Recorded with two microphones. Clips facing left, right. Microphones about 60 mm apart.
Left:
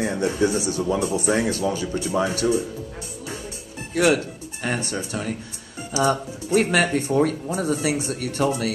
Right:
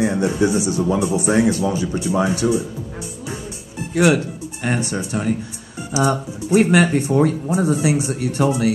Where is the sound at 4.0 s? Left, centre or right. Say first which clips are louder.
Right 3 dB; right.